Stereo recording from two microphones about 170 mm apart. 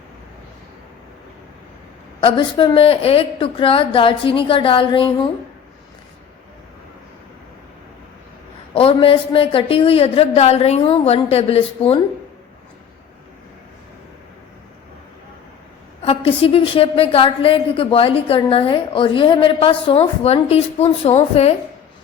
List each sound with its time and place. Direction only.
2.2 s a woman's voice: 30° left (ahead or behind)
8.7 s a woman's voice: 35° left (ahead or behind)
16.0 s a woman's voice: 35° left (ahead or behind)